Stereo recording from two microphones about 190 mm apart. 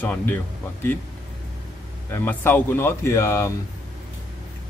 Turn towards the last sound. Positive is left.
turn(degrees=15)  # may be behind; listen again after turning